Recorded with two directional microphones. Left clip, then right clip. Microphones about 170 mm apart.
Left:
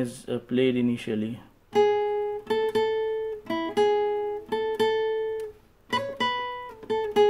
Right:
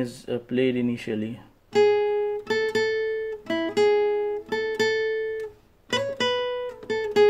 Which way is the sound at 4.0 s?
25° right (ahead or behind).